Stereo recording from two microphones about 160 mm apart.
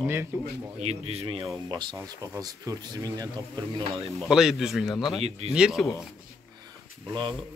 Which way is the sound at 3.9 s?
Centre (ahead or behind).